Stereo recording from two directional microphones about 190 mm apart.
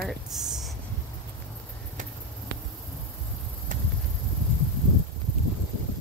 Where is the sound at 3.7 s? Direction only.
40° right (ahead or behind).